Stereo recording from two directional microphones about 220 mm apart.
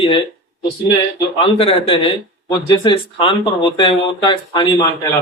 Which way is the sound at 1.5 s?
25° left (ahead or behind).